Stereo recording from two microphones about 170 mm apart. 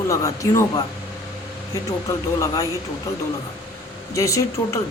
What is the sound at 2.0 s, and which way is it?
Speech, 20° left (ahead or behind).